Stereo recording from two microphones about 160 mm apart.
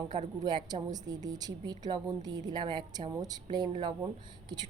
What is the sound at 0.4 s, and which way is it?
Speech, 25° right (ahead or behind).